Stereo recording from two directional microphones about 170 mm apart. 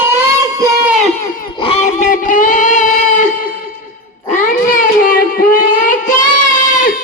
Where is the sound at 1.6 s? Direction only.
40° left (ahead or behind).